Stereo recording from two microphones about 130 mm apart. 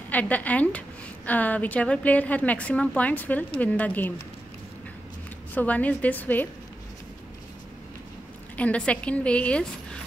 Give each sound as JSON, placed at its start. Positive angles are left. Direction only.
{"t": 0.1, "sound": "a woman's voice", "side_deg": 10}
{"t": 5.5, "sound": "a woman's voice", "side_deg": 10}
{"t": 8.5, "sound": "a woman's voice", "side_deg": 10}